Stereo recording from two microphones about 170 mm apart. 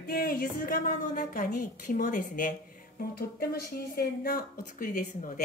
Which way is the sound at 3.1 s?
65° left (ahead or behind).